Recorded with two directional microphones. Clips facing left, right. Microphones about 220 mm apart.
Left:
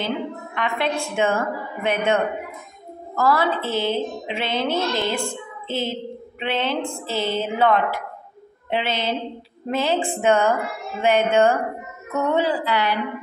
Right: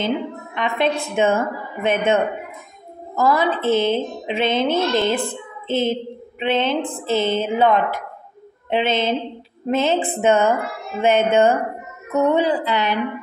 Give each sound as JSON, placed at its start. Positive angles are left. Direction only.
{"t": 0.6, "sound": "a woman's voice", "side_deg": -20}
{"t": 3.2, "sound": "a woman's voice", "side_deg": -20}